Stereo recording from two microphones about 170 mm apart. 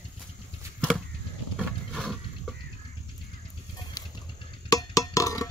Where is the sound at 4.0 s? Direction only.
20° left (ahead or behind).